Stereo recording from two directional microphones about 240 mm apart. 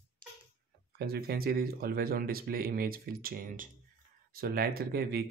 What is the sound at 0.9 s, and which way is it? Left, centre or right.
Speech, right.